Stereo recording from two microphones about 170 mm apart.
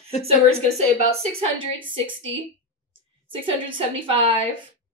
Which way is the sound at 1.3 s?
30° right (ahead or behind).